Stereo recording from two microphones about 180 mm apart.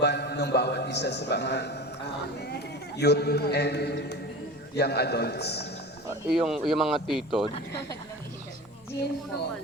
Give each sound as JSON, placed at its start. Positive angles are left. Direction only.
{"t": 0.0, "sound": "a man's voice", "side_deg": 65}
{"t": 3.0, "sound": "a man's voice", "side_deg": 65}
{"t": 6.3, "sound": "speech", "side_deg": 0}